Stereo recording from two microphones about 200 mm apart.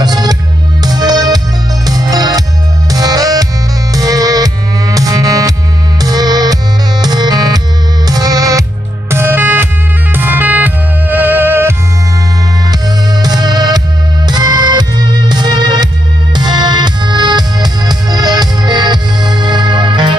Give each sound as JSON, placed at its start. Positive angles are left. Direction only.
{"t": 0.0, "sound": "music", "side_deg": -20}
{"t": 13.2, "sound": "music", "side_deg": -20}